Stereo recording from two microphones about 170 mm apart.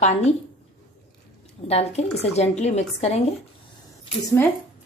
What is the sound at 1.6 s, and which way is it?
A woman's voice, 40° left (ahead or behind).